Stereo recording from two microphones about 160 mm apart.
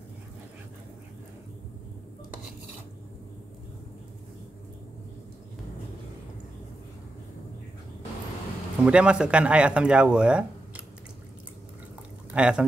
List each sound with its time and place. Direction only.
8.8 s speech: 5° right (ahead or behind)
12.4 s speech: 5° right (ahead or behind)